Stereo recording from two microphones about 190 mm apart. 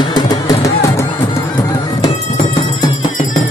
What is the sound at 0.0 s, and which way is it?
Music, 20° left (ahead or behind).